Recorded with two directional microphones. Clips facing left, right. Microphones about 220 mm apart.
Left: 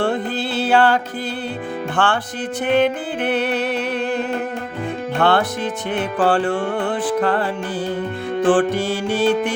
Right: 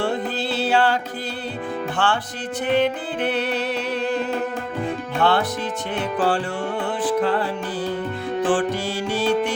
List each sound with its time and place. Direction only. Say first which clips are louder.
0.6 s music: left 4 dB; 55° left (ahead or behind)
2.0 s music: left 5 dB; 55° left (ahead or behind)
5.2 s music: left 3 dB; 55° left (ahead or behind)
8.4 s music: left 6 dB; 55° left (ahead or behind)